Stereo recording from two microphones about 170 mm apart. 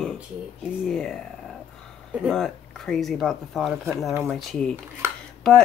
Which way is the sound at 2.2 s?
5° left (ahead or behind).